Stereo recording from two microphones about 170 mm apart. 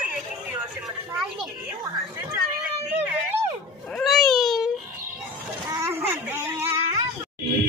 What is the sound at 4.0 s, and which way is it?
Baby cry, centre (ahead or behind).